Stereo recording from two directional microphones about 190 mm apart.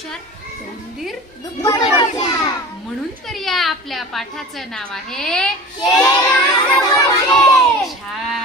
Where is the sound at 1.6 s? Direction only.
25° left (ahead or behind).